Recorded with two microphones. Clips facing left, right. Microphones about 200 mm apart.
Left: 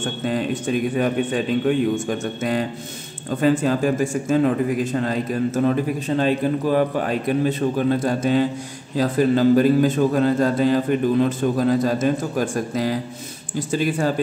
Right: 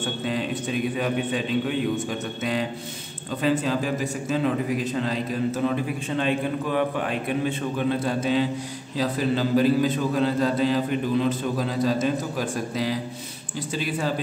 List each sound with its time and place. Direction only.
0.0 s a man's voice: 45° left (ahead or behind)